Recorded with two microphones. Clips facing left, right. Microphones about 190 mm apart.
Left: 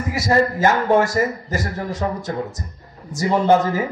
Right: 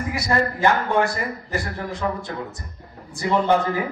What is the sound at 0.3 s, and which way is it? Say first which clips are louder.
A man's voice: left 3 dB; 40° left (ahead or behind).